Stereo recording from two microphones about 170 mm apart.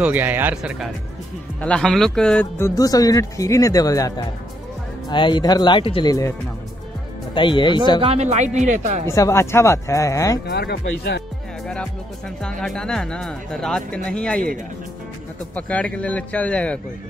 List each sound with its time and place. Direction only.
0.0 s speech: 10° right (ahead or behind)
2.6 s speech: 20° left (ahead or behind)
5.1 s speech: 25° left (ahead or behind)
7.3 s speech: 30° left (ahead or behind)
8.0 s a man's voice: 40° right (ahead or behind)
9.0 s speech: 15° left (ahead or behind)
10.4 s speech: 75° left (ahead or behind)
11.6 s speech: 5° left (ahead or behind)
15.5 s speech: 5° left (ahead or behind)